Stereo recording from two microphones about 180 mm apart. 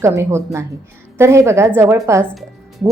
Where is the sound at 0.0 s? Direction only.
15° right (ahead or behind).